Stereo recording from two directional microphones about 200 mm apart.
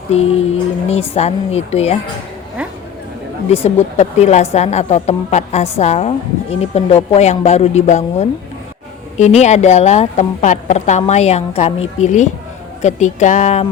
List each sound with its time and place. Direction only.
0.1 s a woman's voice: 30° left (ahead or behind)
3.5 s a woman's voice: 30° left (ahead or behind)